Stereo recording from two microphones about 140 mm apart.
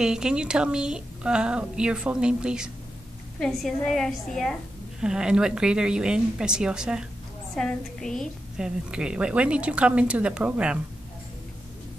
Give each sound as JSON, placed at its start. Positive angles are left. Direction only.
{"t": 0.0, "sound": "a woman's voice", "side_deg": -5}